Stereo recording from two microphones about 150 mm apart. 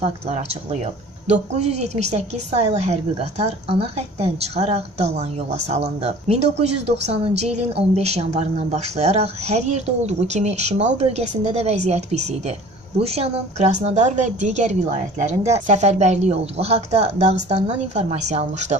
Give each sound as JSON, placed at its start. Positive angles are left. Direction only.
{"t": 0.0, "sound": "a woman's voice", "side_deg": -45}